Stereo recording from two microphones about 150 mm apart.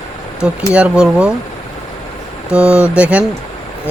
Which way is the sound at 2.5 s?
5° right (ahead or behind).